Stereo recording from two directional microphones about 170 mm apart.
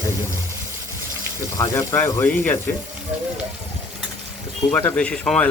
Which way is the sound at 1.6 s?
20° left (ahead or behind).